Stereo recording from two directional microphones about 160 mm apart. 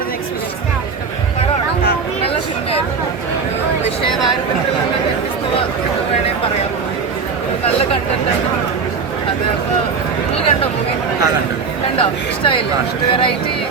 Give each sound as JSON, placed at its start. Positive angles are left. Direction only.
{"t": 11.9, "sound": "chatter", "side_deg": 35}